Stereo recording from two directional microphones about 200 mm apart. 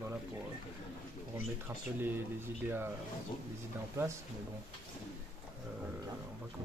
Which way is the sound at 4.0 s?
15° right (ahead or behind).